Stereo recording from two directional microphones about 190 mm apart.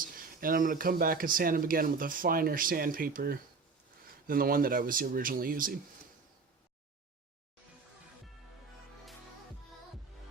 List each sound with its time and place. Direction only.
0.0 s speech: 45° right (ahead or behind)